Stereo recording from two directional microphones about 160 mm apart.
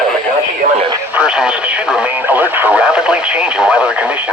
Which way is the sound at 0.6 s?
50° right (ahead or behind).